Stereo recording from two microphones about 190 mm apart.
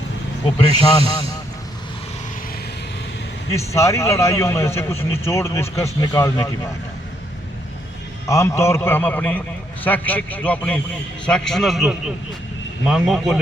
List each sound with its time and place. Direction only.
0.4 s speech: 25° left (ahead or behind)
3.8 s a man's voice: 15° left (ahead or behind)
8.3 s a man's voice: 15° left (ahead or behind); by 13.4 s centre (ahead or behind)